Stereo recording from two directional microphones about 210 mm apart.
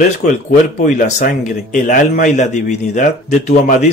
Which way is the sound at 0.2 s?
40° left (ahead or behind).